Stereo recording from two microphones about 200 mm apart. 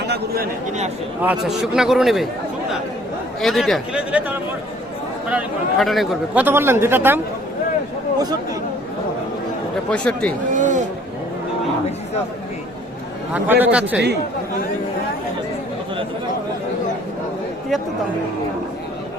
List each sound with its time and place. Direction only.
0.0 s a man's voice: 55° right (ahead or behind)
1.2 s a man's voice: 5° right (ahead or behind)
3.4 s a man's voice: centre (ahead or behind)
9.9 s a man's voice: 5° left (ahead or behind)
10.5 s a sound: 40° right (ahead or behind)
13.3 s speech: 10° right (ahead or behind)